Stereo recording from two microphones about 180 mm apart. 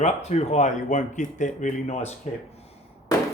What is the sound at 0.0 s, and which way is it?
Speech, 35° left (ahead or behind).